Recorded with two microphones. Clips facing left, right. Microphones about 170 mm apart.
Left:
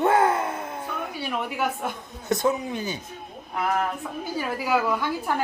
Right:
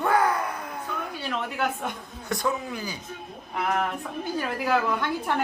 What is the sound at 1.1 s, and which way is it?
Speech, 10° left (ahead or behind).